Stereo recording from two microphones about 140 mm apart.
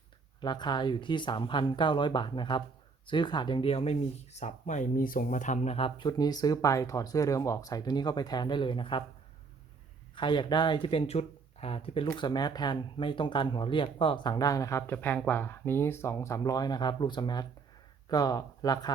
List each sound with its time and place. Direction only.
0.4 s speech: 30° left (ahead or behind)
10.2 s speech: 35° left (ahead or behind)
12.1 s speech: 30° left (ahead or behind)